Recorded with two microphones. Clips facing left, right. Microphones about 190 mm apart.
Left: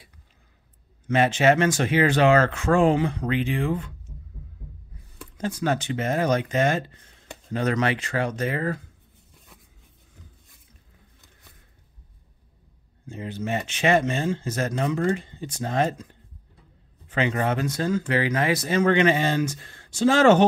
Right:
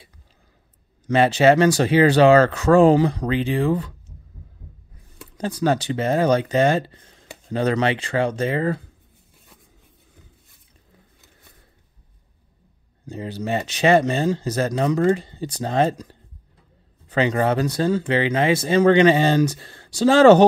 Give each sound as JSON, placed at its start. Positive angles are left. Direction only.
{"t": 1.0, "sound": "speech", "side_deg": -35}
{"t": 5.4, "sound": "speech", "side_deg": -35}
{"t": 13.0, "sound": "speech", "side_deg": -35}